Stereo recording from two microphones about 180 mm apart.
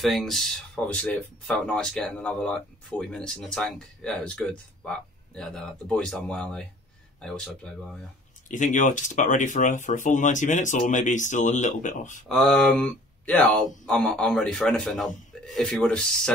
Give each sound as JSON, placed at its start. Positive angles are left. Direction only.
{"t": 0.0, "sound": "speech", "side_deg": 0}
{"t": 8.5, "sound": "speech", "side_deg": 45}
{"t": 12.3, "sound": "speech", "side_deg": 0}